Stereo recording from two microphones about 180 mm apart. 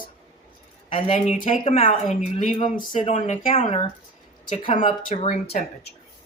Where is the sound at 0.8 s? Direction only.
30° left (ahead or behind).